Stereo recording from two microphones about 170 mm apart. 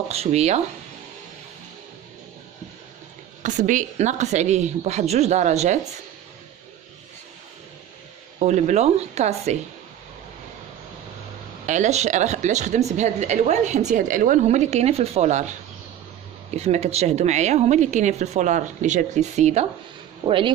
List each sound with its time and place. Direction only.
0.1 s speech: 40° right (ahead or behind)
3.4 s speech: 50° right (ahead or behind)
8.4 s speech: 45° right (ahead or behind)
11.6 s speech: 45° right (ahead or behind)
16.4 s speech: 40° right (ahead or behind)
20.2 s speech: 30° right (ahead or behind)